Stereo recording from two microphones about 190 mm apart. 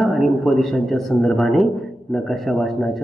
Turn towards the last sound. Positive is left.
turn(degrees=0)  # may be behind; listen again after turning